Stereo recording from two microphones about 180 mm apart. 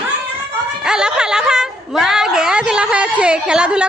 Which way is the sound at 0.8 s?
5° right (ahead or behind).